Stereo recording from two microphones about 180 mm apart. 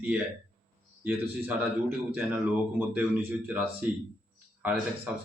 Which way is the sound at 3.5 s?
10° right (ahead or behind).